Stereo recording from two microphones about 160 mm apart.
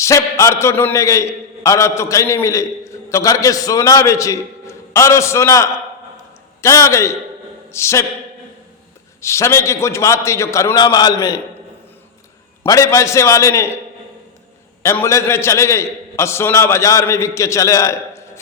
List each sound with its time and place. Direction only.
0.0 s a man's voice: 20° left (ahead or behind)
9.2 s a man's voice: 15° left (ahead or behind)
12.6 s a man's voice: 20° left (ahead or behind)
14.8 s a man's voice: 15° left (ahead or behind)